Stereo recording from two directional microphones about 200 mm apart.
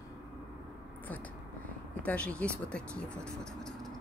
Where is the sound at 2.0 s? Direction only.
5° left (ahead or behind).